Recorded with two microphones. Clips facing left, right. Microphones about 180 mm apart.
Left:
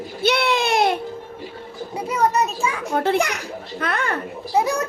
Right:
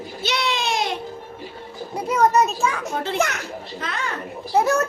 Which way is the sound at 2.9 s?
60° left (ahead or behind).